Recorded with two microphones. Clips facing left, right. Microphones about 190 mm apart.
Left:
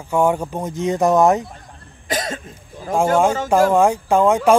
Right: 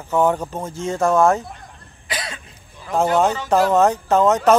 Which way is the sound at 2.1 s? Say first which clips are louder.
Left 6 dB; 45° left (ahead or behind).